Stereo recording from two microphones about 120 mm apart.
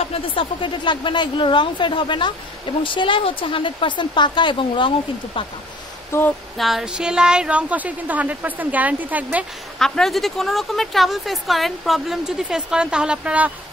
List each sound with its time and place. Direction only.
0.1 s speech: 45° left (ahead or behind)
6.1 s a sound: 20° left (ahead or behind)
6.6 s a woman's voice: 5° right (ahead or behind)
9.8 s a woman's voice: 5° left (ahead or behind)